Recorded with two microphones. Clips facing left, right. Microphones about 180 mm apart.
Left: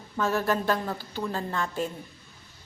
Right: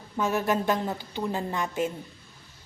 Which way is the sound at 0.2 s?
15° right (ahead or behind).